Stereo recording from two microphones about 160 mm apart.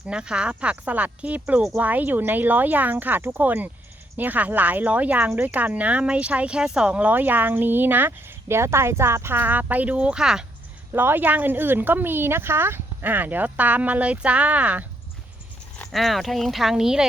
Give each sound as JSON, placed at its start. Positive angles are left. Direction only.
{"t": 0.0, "sound": "speech", "side_deg": -5}